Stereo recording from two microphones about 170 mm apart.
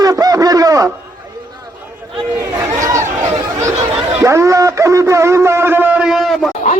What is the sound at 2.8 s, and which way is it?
Chatter, 15° right (ahead or behind).